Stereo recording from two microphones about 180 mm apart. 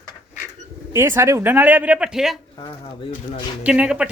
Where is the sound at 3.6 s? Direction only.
5° right (ahead or behind).